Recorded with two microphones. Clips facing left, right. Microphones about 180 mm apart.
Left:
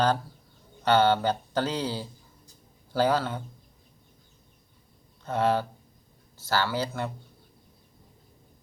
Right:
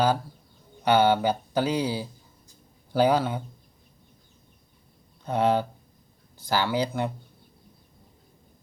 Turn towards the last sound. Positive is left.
turn(degrees=-15)  # may be behind; listen again after turning